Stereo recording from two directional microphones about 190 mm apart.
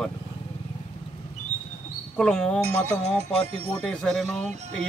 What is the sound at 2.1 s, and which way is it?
Speech, 5° left (ahead or behind).